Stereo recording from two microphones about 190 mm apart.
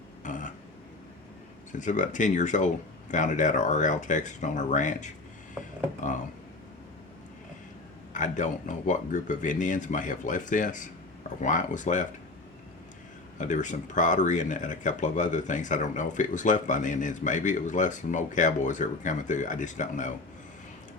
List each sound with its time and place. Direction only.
0.2 s burping: 40° left (ahead or behind)
1.7 s speech: 40° left (ahead or behind)
8.1 s speech: 40° left (ahead or behind)
13.4 s speech: 40° left (ahead or behind)